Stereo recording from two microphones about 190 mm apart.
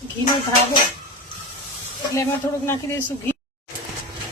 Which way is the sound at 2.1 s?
15° left (ahead or behind).